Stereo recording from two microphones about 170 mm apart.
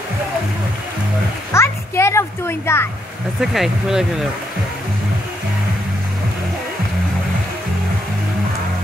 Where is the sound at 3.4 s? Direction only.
Centre (ahead or behind).